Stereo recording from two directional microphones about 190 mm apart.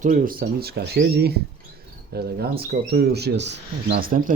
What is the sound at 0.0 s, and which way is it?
Speech, 50° right (ahead or behind).